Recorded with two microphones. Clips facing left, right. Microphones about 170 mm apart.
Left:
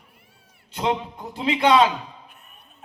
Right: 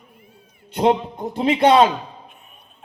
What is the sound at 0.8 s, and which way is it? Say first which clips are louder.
A man's voice: right 7 dB; 45° right (ahead or behind).